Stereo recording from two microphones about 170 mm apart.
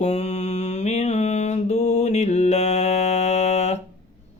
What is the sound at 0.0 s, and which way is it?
Mantra, 40° left (ahead or behind).